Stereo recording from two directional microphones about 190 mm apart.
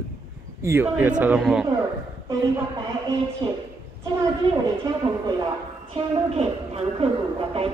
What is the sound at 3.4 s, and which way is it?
Speech, 25° right (ahead or behind).